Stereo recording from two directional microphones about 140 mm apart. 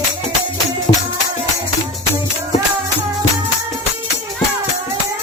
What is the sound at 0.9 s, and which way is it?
Music, 55° left (ahead or behind).